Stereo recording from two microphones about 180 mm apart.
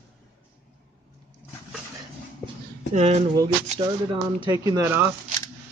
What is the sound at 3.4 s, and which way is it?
Speech, 25° right (ahead or behind).